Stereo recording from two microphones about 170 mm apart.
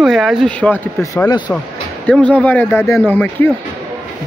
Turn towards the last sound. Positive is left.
turn(degrees=10)  # may be behind; listen again after turning